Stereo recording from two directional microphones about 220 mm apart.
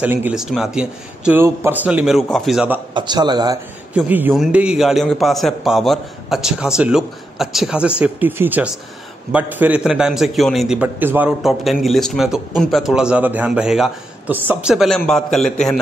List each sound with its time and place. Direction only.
0.0 s a man's voice: 10° right (ahead or behind)
2.9 s a man's voice: 20° right (ahead or behind)
3.9 s a man's voice: 5° right (ahead or behind)